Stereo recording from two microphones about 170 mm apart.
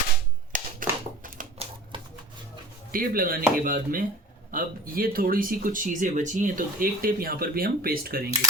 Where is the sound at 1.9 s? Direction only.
30° right (ahead or behind).